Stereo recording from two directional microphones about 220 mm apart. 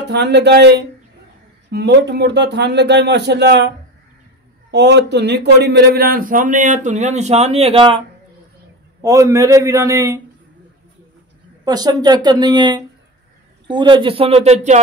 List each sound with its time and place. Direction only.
0.1 s speech: 50° right (ahead or behind); by 8.0 s 25° right (ahead or behind)
9.0 s a man's voice: 15° right (ahead or behind)
11.6 s speech: 20° right (ahead or behind)